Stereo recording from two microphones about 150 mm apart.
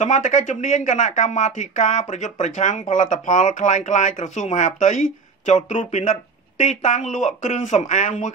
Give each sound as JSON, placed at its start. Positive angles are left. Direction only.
{"t": 0.0, "sound": "speech", "side_deg": 55}